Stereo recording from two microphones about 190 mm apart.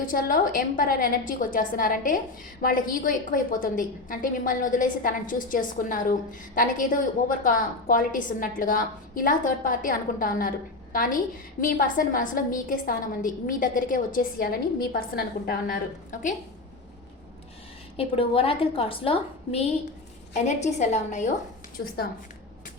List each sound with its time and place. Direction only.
0.0 s a woman's voice: 45° left (ahead or behind)
17.9 s a woman's voice: 30° left (ahead or behind)
21.8 s a woman's voice: 60° left (ahead or behind)